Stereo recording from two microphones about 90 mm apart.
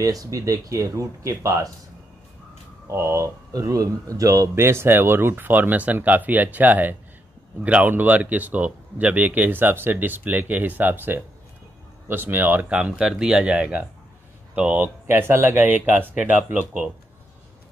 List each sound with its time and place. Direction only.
0.0 s speech: 40° right (ahead or behind)
2.9 s speech: 30° right (ahead or behind); by 14.9 s 15° right (ahead or behind)
15.0 s speech: 25° right (ahead or behind)